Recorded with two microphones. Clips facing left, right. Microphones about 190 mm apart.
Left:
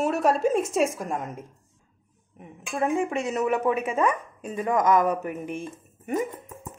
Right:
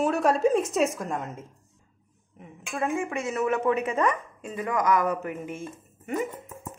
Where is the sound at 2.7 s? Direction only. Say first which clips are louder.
Left 3 dB; 20° left (ahead or behind).